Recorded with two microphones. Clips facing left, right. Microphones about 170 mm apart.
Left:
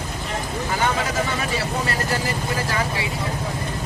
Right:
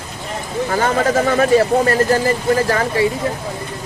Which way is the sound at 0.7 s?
50° right (ahead or behind).